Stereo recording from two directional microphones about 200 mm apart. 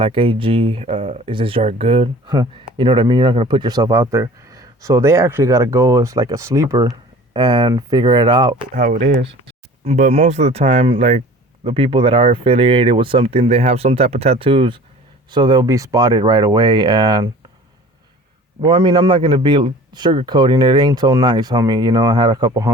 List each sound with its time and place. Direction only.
0.0 s speech: 25° right (ahead or behind)
8.7 s speech: 45° right (ahead or behind)
9.2 s speech: 30° right (ahead or behind)
18.6 s speech: 25° right (ahead or behind)